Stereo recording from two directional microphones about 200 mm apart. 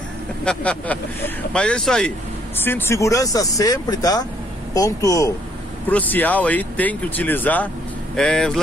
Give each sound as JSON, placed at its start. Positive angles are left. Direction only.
{"t": 0.5, "sound": "speech", "side_deg": 5}